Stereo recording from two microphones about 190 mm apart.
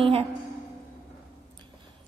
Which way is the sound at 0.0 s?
30° right (ahead or behind).